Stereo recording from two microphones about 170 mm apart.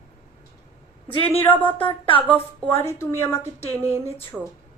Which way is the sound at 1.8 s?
30° left (ahead or behind).